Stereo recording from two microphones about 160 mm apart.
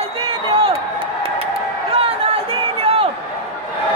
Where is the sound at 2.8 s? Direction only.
35° right (ahead or behind).